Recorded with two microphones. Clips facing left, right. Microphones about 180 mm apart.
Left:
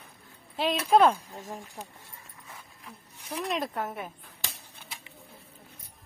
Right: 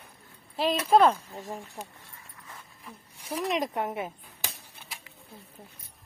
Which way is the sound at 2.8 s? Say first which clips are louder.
Right 4 dB; 10° right (ahead or behind).